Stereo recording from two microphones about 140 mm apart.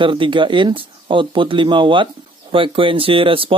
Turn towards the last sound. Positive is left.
turn(degrees=-40)  # may be behind; listen again after turning